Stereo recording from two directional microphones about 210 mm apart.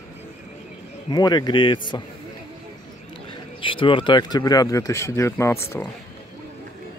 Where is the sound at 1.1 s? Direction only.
20° left (ahead or behind).